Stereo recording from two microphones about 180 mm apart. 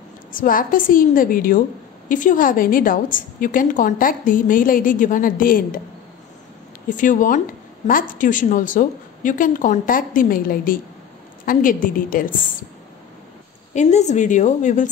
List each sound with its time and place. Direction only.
0.3 s a woman's voice: 50° left (ahead or behind)
6.9 s a woman's voice: 45° left (ahead or behind)
13.7 s a woman's voice: 40° left (ahead or behind)